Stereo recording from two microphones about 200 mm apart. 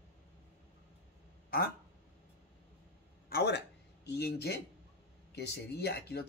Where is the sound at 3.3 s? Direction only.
55° left (ahead or behind).